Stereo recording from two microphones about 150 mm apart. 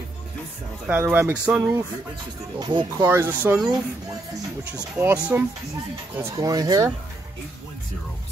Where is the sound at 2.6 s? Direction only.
30° right (ahead or behind).